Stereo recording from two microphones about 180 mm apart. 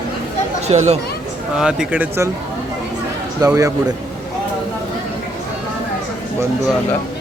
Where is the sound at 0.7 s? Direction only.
35° right (ahead or behind).